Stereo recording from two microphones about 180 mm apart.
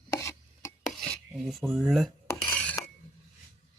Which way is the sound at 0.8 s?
5° left (ahead or behind).